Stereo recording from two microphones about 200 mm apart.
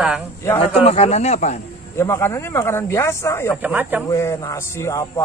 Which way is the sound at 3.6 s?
10° right (ahead or behind).